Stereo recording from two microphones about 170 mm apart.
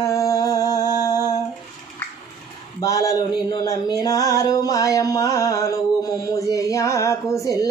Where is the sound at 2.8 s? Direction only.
20° left (ahead or behind).